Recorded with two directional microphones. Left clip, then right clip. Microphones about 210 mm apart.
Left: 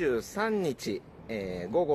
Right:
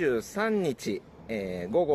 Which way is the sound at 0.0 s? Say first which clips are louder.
Right 2 dB; 45° right (ahead or behind).